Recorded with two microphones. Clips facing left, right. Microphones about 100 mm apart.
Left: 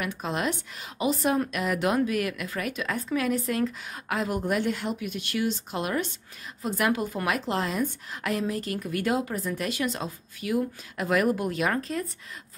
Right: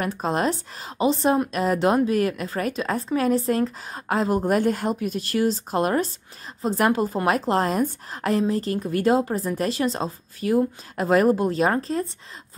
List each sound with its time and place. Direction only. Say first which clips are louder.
0.0 s a woman's voice: right 6 dB; 40° right (ahead or behind)